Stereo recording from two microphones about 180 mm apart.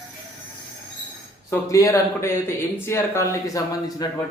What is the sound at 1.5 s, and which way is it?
Speech, 20° left (ahead or behind).